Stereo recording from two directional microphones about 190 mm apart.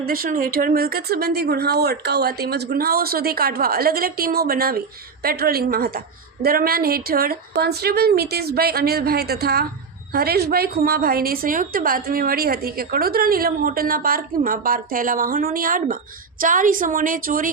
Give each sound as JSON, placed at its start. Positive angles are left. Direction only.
{"t": 0.0, "sound": "a woman's voice", "side_deg": -50}